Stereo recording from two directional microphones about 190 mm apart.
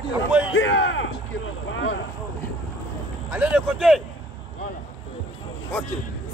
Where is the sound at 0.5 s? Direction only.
80° left.